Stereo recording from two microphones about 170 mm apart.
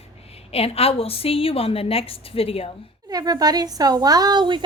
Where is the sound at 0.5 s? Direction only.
35° left (ahead or behind).